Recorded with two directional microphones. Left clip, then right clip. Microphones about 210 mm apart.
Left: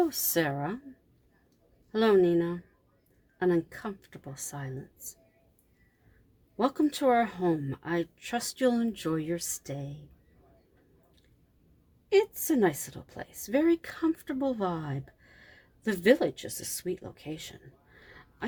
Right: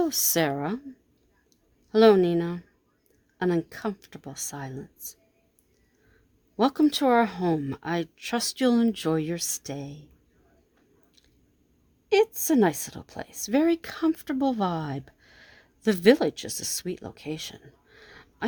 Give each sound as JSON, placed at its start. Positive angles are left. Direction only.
{"t": 0.0, "sound": "speech", "side_deg": -45}
{"t": 1.9, "sound": "speech", "side_deg": -45}
{"t": 6.6, "sound": "speech", "side_deg": -45}
{"t": 12.0, "sound": "a woman's voice", "side_deg": -45}